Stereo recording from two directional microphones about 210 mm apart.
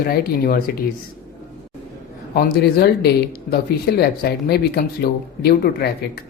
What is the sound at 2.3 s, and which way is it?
Speech, 50° left (ahead or behind).